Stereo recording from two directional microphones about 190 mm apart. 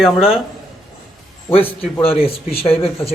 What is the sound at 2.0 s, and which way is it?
Speech, 30° left (ahead or behind).